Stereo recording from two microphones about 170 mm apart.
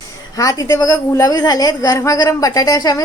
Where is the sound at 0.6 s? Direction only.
20° left (ahead or behind).